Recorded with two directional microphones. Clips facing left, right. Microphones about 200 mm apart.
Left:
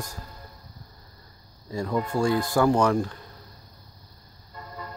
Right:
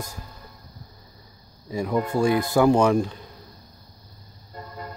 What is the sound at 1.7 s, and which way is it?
Speech, 20° right (ahead or behind).